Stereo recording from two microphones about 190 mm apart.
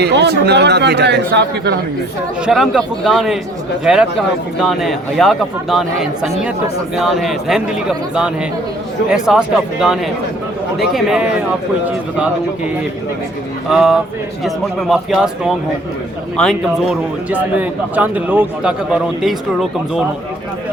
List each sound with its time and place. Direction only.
0.0 s speech: 65° right (ahead or behind)
2.5 s a man's voice: centre (ahead or behind)
4.6 s a man's voice: centre (ahead or behind)